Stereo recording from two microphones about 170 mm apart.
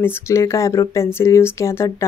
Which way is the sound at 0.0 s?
15° left (ahead or behind).